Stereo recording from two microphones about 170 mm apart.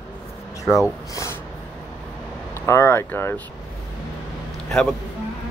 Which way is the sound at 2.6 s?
15° left (ahead or behind).